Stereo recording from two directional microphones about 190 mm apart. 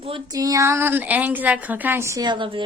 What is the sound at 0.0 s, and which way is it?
A woman's voice, 25° right (ahead or behind).